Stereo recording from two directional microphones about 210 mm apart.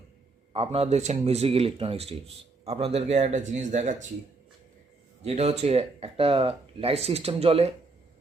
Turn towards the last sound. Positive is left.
turn(degrees=-30)  # may be behind; listen again after turning